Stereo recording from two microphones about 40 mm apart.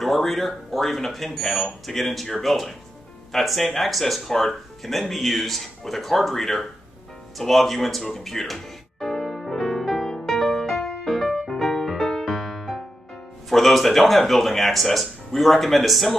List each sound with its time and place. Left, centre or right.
0.0 s speech: centre
9.2 s music: centre
12.0 s music: centre
12.3 s music: centre
13.5 s speech: centre